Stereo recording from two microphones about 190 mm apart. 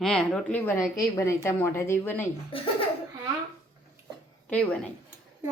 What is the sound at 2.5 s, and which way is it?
Speech, 30° left (ahead or behind).